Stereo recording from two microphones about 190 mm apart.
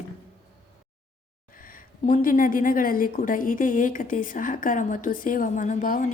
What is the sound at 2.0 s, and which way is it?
A woman's voice, 45° left (ahead or behind).